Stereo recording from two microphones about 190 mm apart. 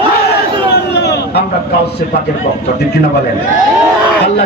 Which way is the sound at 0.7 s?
65° left (ahead or behind).